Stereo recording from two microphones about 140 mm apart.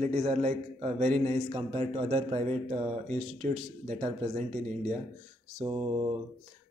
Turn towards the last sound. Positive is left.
turn(degrees=-35)  # may be behind; listen again after turning